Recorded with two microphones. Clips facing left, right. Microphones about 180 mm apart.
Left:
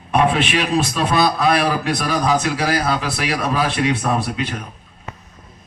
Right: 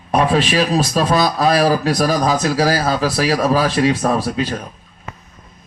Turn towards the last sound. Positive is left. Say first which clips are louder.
# right 3 dB
turn(degrees=-35)  # may be behind; listen again after turning